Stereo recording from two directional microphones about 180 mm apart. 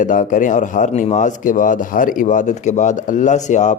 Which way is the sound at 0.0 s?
45° left (ahead or behind).